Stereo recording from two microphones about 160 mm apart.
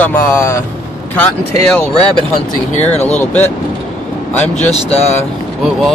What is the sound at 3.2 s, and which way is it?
Speech, 10° left (ahead or behind).